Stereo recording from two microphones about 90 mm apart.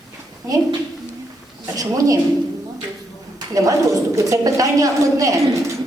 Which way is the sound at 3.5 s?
40° right (ahead or behind).